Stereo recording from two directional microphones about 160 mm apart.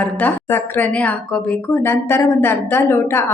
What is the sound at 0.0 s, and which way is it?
A woman's voice, 10° left (ahead or behind).